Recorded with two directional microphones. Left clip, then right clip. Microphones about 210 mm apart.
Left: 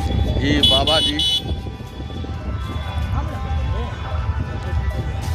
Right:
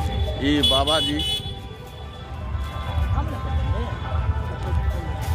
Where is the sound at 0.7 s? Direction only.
15° left (ahead or behind).